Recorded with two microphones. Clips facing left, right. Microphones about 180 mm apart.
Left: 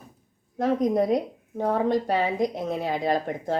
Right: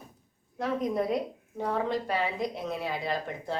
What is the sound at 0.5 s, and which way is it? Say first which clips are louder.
A woman's voice: left 6 dB; 45° left (ahead or behind).